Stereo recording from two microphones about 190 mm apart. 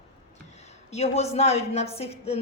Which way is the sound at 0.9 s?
35° left (ahead or behind).